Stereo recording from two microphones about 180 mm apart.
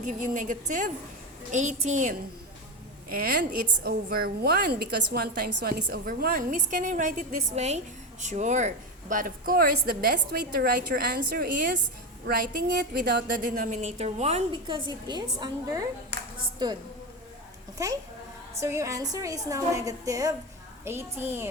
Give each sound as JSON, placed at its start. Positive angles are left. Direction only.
{"t": 0.0, "sound": "a woman's voice", "side_deg": -45}
{"t": 3.1, "sound": "a woman's voice", "side_deg": -55}
{"t": 18.5, "sound": "a woman's voice", "side_deg": -15}